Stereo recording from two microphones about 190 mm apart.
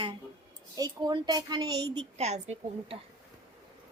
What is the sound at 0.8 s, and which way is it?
A woman's voice, 20° right (ahead or behind).